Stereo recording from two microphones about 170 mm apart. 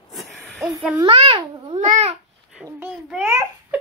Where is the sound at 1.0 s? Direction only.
30° right (ahead or behind).